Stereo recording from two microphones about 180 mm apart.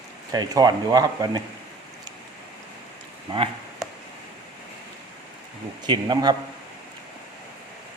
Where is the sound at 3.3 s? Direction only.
30° right (ahead or behind).